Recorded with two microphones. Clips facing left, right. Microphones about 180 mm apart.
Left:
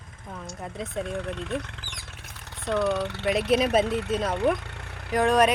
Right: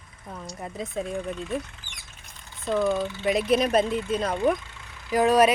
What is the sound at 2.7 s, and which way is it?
Speech, 70° left (ahead or behind).